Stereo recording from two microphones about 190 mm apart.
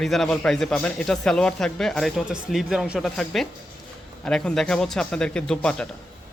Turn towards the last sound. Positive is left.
turn(degrees=5)  # may be behind; listen again after turning